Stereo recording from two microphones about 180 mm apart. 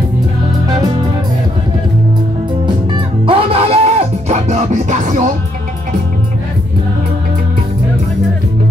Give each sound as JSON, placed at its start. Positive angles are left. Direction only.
{"t": 2.6, "sound": "music", "side_deg": -25}